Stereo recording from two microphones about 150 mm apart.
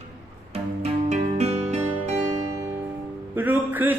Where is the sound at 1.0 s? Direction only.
45° right (ahead or behind).